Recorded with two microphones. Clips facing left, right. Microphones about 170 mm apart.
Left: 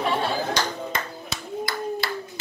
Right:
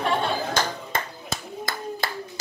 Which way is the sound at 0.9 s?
50° right (ahead or behind).